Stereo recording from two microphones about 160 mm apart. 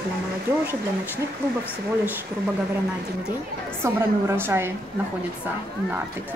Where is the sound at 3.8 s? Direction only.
15° right (ahead or behind).